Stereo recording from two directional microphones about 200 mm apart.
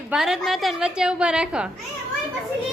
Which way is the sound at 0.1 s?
5° right (ahead or behind).